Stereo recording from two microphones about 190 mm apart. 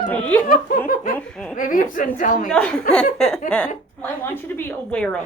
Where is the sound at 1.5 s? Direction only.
45° left (ahead or behind).